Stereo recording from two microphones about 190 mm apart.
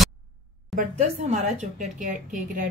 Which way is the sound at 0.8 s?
40° right (ahead or behind).